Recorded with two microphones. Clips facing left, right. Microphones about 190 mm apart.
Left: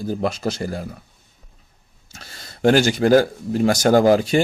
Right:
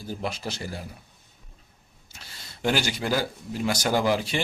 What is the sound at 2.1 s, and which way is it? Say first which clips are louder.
Speech: left 6 dB; 45° left (ahead or behind).